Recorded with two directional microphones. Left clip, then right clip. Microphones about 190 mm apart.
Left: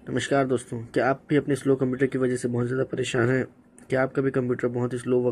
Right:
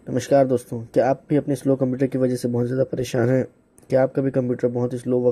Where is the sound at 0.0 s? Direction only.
40° right (ahead or behind).